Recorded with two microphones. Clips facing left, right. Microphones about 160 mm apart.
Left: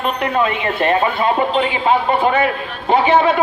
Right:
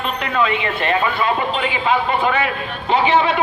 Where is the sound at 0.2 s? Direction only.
45° left (ahead or behind).